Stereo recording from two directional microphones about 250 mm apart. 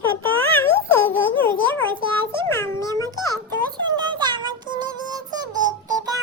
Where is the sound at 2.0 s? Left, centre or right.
Centre.